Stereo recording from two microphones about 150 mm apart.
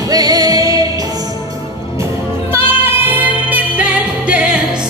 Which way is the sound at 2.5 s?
15° right (ahead or behind).